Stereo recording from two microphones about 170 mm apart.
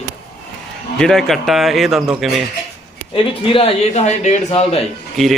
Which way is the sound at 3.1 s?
35° left (ahead or behind).